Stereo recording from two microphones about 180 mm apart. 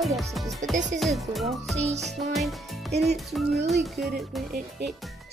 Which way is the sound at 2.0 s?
Centre (ahead or behind).